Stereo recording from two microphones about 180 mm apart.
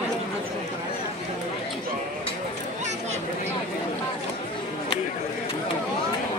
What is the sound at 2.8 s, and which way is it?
Chatter, 40° right (ahead or behind).